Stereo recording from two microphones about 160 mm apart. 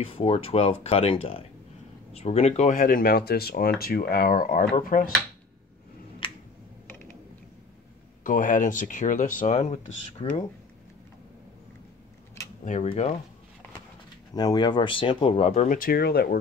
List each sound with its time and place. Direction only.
0.0 s speech: 35° left (ahead or behind); by 5.1 s 60° left (ahead or behind)
6.2 s finger snapping: 30° left (ahead or behind)
8.2 s speech: 55° left (ahead or behind)
12.6 s speech: 50° left (ahead or behind)
14.3 s speech: 25° left (ahead or behind); by 15.8 s 45° left (ahead or behind)
15.8 s speech: 75° left (ahead or behind)